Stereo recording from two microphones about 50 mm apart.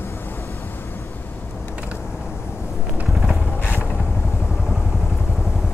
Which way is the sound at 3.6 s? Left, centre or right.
Left.